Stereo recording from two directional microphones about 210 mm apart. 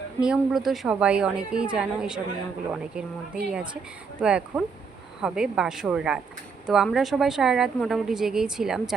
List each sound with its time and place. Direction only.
0.2 s a woman's voice: 5° right (ahead or behind)